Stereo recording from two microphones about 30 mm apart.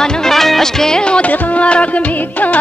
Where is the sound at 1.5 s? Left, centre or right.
Left.